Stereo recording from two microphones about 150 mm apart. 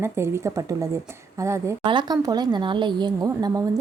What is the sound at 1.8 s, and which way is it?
Speech, 30° right (ahead or behind).